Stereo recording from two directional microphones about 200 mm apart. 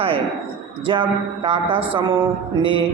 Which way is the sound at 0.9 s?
25° right (ahead or behind).